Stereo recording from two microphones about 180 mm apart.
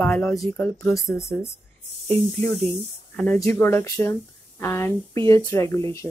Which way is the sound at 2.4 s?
5° left (ahead or behind).